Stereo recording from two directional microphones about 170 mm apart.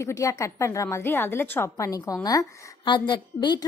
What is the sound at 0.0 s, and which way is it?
A woman's voice, 15° left (ahead or behind).